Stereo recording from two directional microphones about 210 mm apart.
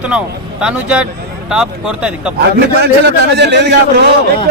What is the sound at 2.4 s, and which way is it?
A man's voice, 55° right (ahead or behind).